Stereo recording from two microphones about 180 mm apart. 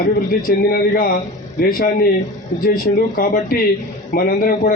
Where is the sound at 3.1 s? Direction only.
50° left (ahead or behind).